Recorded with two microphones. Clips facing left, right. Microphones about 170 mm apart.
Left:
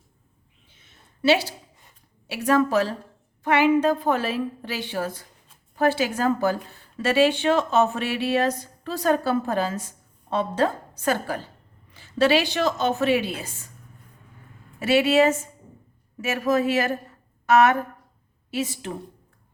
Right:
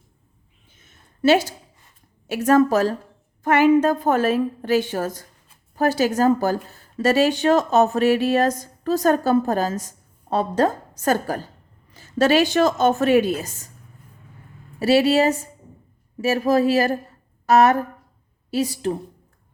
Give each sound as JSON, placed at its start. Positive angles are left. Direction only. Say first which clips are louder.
{"t": 0.7, "sound": "a sound", "louder": "right 2 dB", "side_deg": -45}
{"t": 2.2, "sound": "a woman's voice", "louder": "right 5 dB", "side_deg": -45}
{"t": 14.8, "sound": "speech", "louder": "right 2 dB", "side_deg": -35}